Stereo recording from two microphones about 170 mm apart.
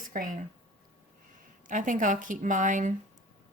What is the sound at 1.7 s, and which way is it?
Speech, 50° right (ahead or behind).